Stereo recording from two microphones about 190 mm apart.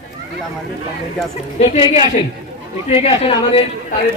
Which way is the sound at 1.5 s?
35° left (ahead or behind).